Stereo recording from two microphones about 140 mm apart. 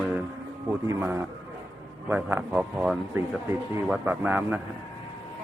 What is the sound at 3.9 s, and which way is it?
Speech, 10° right (ahead or behind).